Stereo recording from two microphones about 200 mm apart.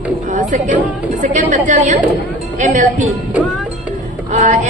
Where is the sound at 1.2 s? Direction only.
35° right (ahead or behind).